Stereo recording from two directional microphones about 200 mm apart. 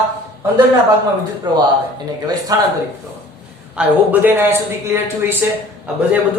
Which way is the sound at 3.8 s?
5° right (ahead or behind).